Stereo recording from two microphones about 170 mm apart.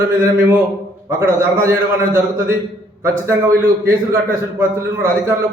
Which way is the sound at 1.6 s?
15° right (ahead or behind).